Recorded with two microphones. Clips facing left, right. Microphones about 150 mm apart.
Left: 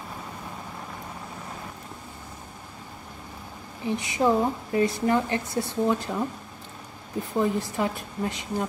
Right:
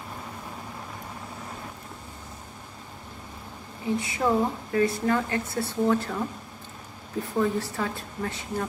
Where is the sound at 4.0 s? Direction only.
20° left (ahead or behind).